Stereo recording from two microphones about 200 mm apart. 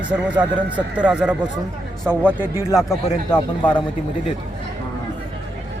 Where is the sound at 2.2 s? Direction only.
10° left (ahead or behind).